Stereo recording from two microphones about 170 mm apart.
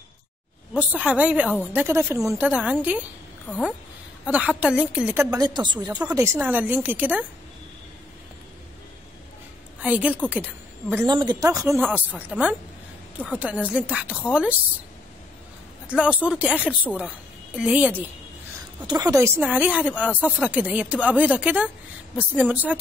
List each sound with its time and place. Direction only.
0.7 s a woman's voice: 10° right (ahead or behind)
4.3 s a woman's voice: 10° right (ahead or behind)
5.5 s a woman's voice: 25° right (ahead or behind); by 7.2 s 10° right (ahead or behind)
9.8 s a woman's voice: 10° right (ahead or behind)
11.1 s a woman's voice: 25° right (ahead or behind); by 14.1 s 10° right (ahead or behind)
15.9 s a woman's voice: 5° right (ahead or behind)
18.9 s a woman's voice: 20° right (ahead or behind)